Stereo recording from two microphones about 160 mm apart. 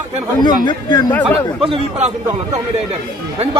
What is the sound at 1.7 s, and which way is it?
Speech, 40° right (ahead or behind).